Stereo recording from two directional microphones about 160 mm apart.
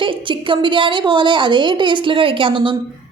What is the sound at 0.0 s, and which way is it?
A woman's voice, 30° right (ahead or behind).